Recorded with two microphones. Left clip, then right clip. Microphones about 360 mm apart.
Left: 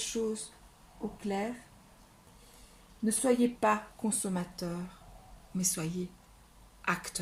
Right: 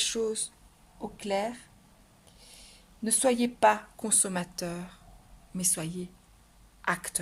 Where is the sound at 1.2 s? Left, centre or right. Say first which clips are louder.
Right 6 dB; right.